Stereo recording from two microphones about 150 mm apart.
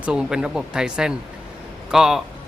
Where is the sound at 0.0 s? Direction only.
5° right (ahead or behind).